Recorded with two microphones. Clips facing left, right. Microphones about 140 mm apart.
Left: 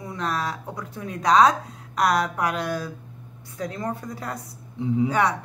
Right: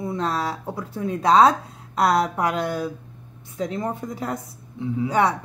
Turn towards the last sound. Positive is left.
turn(degrees=-25)  # may be behind; listen again after turning